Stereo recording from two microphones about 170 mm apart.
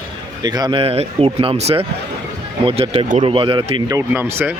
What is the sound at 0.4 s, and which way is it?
Speech, 25° right (ahead or behind).